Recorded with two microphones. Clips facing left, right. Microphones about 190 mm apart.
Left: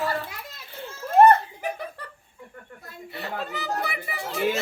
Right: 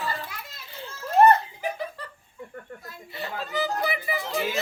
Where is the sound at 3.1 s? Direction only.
60° left (ahead or behind).